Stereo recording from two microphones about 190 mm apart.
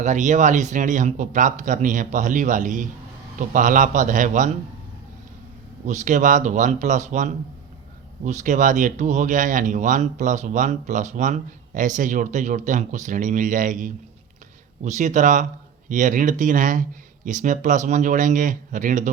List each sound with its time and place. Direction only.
0.0 s speech: 40° right (ahead or behind)
5.8 s speech: 40° right (ahead or behind)